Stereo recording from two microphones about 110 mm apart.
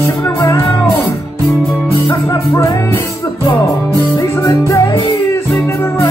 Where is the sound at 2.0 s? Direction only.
25° left (ahead or behind).